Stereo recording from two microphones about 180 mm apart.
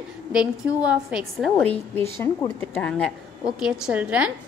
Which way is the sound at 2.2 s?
15° left (ahead or behind).